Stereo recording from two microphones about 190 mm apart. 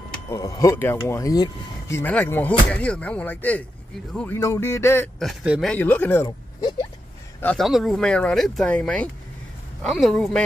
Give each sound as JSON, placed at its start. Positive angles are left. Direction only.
{"t": 0.3, "sound": "speech", "side_deg": 15}
{"t": 5.2, "sound": "speech", "side_deg": 0}
{"t": 5.7, "sound": "speech", "side_deg": 10}
{"t": 6.2, "sound": "speech", "side_deg": 20}
{"t": 7.3, "sound": "speech", "side_deg": 5}